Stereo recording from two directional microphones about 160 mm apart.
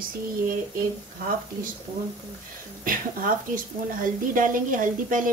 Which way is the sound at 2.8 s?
60° right (ahead or behind).